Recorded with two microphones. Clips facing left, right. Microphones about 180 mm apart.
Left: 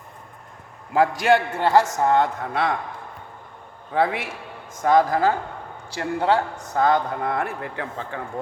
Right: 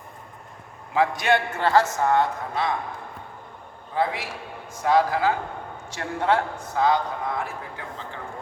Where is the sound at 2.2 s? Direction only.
65° left (ahead or behind).